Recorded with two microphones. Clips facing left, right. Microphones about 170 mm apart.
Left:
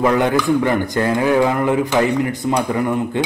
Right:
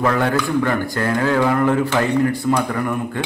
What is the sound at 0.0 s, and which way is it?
A man's voice, 15° left (ahead or behind).